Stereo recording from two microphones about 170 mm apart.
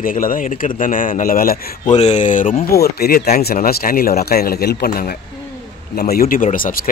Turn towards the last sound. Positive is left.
turn(degrees=55)  # may be behind; listen again after turning